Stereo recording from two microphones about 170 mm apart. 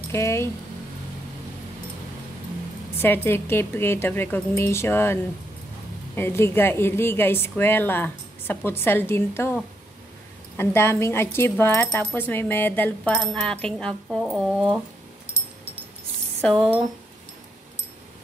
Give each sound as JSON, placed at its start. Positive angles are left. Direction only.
{"t": 0.1, "sound": "speech", "side_deg": 15}
{"t": 3.0, "sound": "speech", "side_deg": 15}
{"t": 10.6, "sound": "speech", "side_deg": 15}
{"t": 16.3, "sound": "speech", "side_deg": 5}